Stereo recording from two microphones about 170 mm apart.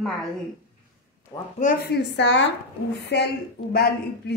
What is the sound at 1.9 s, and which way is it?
A woman's voice, 90° left.